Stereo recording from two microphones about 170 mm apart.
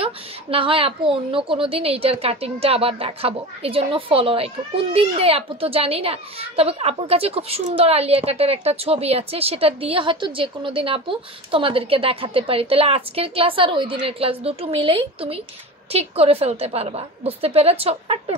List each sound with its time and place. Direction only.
0.0 s a woman's voice: 35° right (ahead or behind)